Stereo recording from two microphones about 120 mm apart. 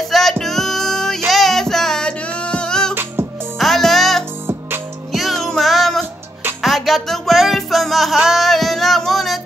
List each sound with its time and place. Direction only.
0.1 s music: centre (ahead or behind)
2.9 s music: 20° right (ahead or behind)
3.5 s music: centre (ahead or behind)